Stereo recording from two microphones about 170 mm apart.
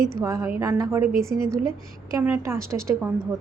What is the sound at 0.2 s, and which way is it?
A woman's voice, 15° right (ahead or behind).